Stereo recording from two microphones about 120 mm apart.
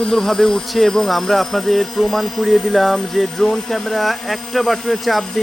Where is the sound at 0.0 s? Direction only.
5° left (ahead or behind).